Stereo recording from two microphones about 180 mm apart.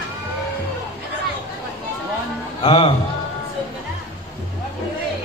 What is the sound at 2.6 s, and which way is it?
Speech, 30° left (ahead or behind).